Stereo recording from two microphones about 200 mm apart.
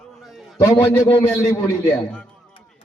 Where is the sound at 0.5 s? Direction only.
15° left (ahead or behind).